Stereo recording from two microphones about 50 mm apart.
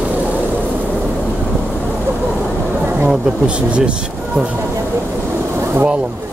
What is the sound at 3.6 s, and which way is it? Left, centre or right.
Speech, right.